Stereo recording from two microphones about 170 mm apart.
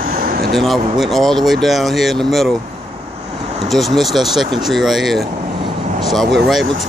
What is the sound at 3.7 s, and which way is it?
Speech, centre (ahead or behind).